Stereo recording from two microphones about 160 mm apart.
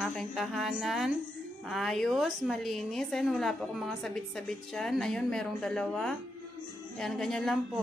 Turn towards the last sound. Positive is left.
turn(degrees=5)  # may be behind; listen again after turning